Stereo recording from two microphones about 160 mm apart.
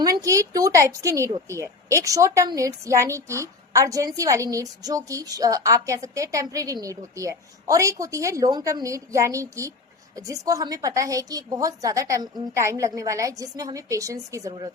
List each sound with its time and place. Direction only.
0.0 s a woman's voice: 20° right (ahead or behind)